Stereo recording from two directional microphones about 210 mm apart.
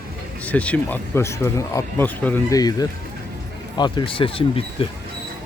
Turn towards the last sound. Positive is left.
turn(degrees=25)  # may be behind; listen again after turning